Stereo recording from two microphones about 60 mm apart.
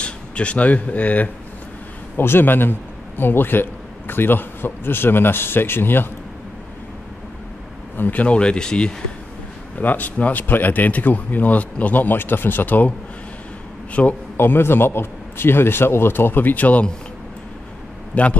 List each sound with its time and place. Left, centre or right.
0.0 s speech: centre
2.1 s a man's voice: left
8.0 s speech: left
9.8 s speech: left
14.0 s speech: centre
14.3 s a man's voice: left
18.1 s a man's voice: left